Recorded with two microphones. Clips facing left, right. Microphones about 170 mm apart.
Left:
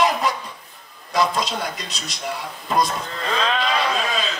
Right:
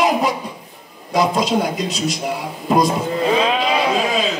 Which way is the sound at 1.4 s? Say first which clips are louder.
Right 9 dB; 5° right (ahead or behind).